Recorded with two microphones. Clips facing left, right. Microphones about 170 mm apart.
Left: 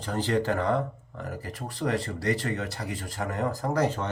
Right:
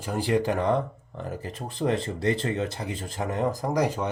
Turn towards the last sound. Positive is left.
turn(degrees=-10)  # may be behind; listen again after turning